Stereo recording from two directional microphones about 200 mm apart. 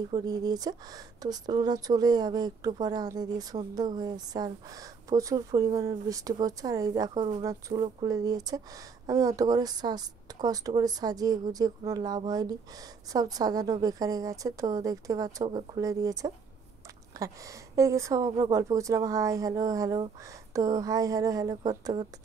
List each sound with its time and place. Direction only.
0.1 s a woman's voice: 20° right (ahead or behind)